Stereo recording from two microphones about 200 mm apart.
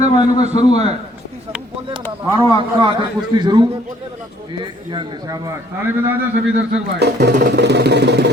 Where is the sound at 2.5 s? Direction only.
25° right (ahead or behind).